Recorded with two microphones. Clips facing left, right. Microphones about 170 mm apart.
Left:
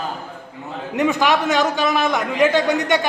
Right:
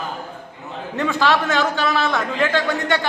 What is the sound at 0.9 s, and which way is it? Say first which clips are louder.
A man's voice: left 2 dB; 15° left (ahead or behind).